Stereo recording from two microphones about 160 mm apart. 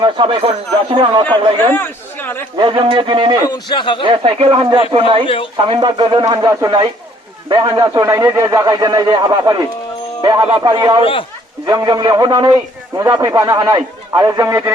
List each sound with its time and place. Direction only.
0.0 s a man's voice: 30° right (ahead or behind)
1.7 s chatter: 15° left (ahead or behind)
2.6 s speech: 30° right (ahead or behind)
3.5 s a man's voice: 30° left (ahead or behind)
4.0 s speech: 30° right (ahead or behind)
5.2 s speech: 35° left (ahead or behind)
5.5 s a man's voice: 30° right (ahead or behind)
11.0 s speech: 35° left (ahead or behind)
11.6 s a man's voice: 25° right (ahead or behind)